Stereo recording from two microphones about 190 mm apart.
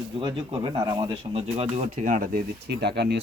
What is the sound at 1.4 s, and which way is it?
Speech, 30° right (ahead or behind).